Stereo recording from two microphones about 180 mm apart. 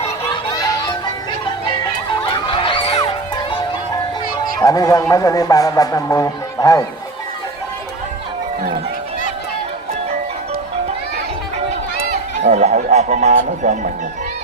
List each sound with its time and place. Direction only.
0.5 s music: 20° left (ahead or behind)
2.2 s a sound: 30° left (ahead or behind)
4.6 s speech: 20° left (ahead or behind)
12.4 s speech: 40° right (ahead or behind)